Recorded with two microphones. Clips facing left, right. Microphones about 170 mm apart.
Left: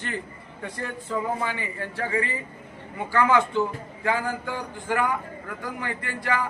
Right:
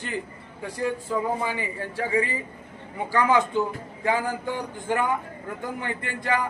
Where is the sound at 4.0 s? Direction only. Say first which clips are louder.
Right 1 dB; 15° right (ahead or behind).